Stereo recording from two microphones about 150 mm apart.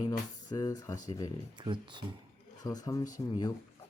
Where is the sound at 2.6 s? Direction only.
25° left (ahead or behind).